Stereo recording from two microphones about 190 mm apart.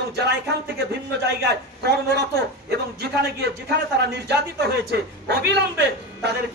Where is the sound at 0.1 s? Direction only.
60° right (ahead or behind).